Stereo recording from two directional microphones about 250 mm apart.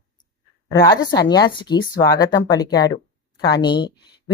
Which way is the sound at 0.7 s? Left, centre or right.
Centre.